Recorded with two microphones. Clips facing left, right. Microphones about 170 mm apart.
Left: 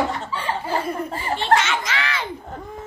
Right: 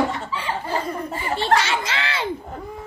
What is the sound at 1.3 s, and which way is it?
Speech, 35° right (ahead or behind).